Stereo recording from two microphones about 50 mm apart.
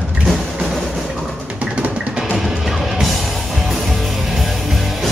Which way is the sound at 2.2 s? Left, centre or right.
Centre.